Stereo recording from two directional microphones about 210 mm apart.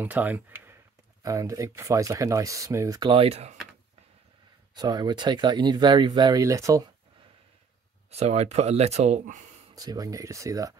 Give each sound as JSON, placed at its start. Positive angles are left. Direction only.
{"t": 0.0, "sound": "speech", "side_deg": -10}
{"t": 4.7, "sound": "speech", "side_deg": -20}
{"t": 8.1, "sound": "speech", "side_deg": -30}
{"t": 9.8, "sound": "speech", "side_deg": -15}